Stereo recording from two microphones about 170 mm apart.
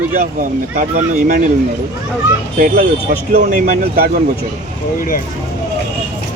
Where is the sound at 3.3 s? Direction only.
50° right (ahead or behind).